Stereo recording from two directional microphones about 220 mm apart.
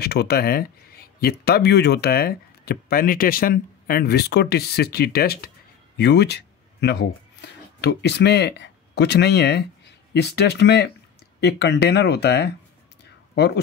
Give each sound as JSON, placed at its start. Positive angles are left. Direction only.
{"t": 0.0, "sound": "speech", "side_deg": 45}